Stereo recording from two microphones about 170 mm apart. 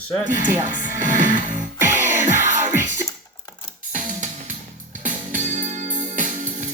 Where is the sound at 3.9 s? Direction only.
50° right (ahead or behind).